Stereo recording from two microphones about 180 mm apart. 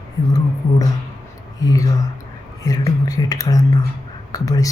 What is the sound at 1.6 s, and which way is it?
Speech, 20° left (ahead or behind).